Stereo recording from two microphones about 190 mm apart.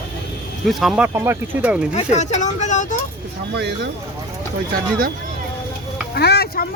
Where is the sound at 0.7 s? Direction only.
Centre (ahead or behind).